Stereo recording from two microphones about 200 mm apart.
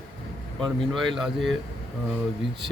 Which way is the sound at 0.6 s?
Centre (ahead or behind).